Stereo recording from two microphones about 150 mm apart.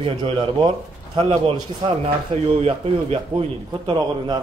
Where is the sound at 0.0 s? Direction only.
35° right (ahead or behind).